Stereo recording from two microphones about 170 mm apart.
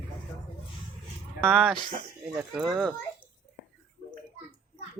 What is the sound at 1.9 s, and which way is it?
Speech, 30° right (ahead or behind).